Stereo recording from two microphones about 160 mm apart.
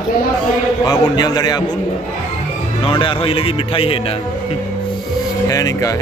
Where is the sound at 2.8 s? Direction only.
35° left (ahead or behind).